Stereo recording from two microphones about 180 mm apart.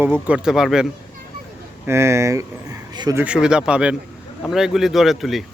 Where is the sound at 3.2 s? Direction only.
5° right (ahead or behind).